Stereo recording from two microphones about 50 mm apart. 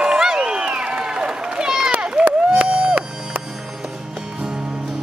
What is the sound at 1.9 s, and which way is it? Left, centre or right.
Run, centre.